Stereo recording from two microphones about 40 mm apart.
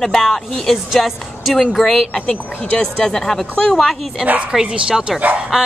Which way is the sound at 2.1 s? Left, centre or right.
Left.